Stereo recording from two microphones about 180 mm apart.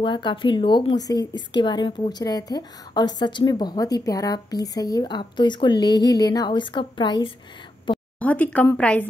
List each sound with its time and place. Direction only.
0.0 s a woman's voice: 25° left (ahead or behind)
7.9 s a sound: 25° left (ahead or behind)
8.2 s speech: 10° left (ahead or behind)